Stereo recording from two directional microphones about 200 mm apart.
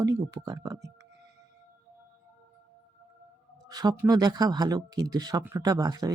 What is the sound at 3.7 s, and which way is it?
Speech, 20° right (ahead or behind).